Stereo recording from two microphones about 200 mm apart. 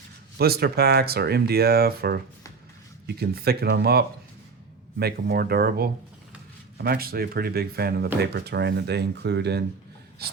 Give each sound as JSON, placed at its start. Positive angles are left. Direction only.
{"t": 0.3, "sound": "speech", "side_deg": -50}